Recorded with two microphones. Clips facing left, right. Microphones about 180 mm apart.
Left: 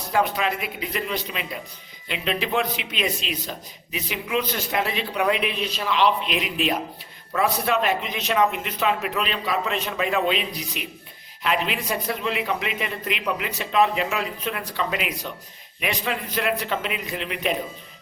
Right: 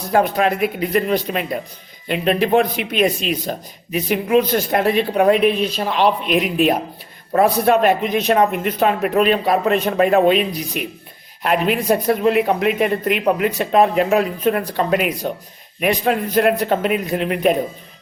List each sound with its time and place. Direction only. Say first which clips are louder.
0.1 s a man's voice: right 7 dB; 50° right (ahead or behind)